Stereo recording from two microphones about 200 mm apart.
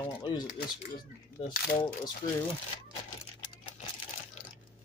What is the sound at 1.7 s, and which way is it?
Speech, 20° left (ahead or behind).